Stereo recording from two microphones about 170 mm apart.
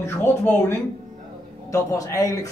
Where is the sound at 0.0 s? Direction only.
15° left (ahead or behind).